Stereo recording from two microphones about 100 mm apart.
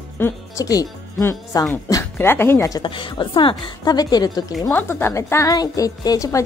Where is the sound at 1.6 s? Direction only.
30° left (ahead or behind).